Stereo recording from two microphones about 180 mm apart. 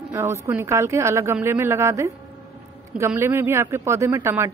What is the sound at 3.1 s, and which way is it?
Speech, 15° right (ahead or behind).